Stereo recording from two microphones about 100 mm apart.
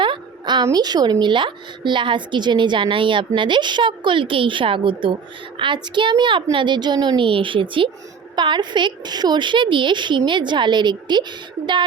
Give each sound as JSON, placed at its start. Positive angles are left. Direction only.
{"t": 0.0, "sound": "a woman's voice", "side_deg": -50}